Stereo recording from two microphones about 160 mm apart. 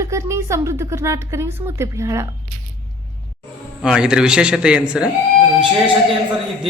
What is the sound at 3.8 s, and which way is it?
A man's voice, 5° right (ahead or behind).